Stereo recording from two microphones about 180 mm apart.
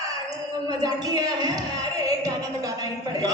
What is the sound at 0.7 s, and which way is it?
A man's voice, 20° right (ahead or behind).